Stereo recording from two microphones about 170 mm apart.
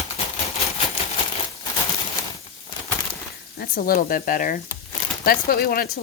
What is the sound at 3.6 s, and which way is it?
Speech, 60° left (ahead or behind).